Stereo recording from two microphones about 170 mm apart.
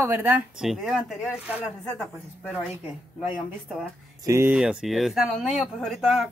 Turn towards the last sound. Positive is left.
turn(degrees=0)  # may be behind; listen again after turning